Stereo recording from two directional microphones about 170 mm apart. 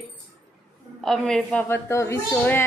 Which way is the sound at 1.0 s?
5° left (ahead or behind).